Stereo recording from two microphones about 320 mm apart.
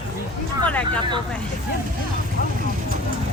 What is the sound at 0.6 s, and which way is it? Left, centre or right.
Speech, centre.